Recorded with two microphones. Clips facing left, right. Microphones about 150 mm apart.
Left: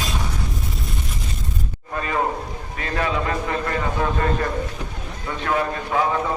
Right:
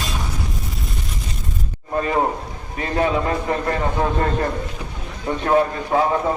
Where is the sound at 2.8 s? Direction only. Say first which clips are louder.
Right 4 dB; 30° right (ahead or behind).